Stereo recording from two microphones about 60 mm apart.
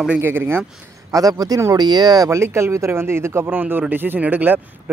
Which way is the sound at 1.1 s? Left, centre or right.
Right.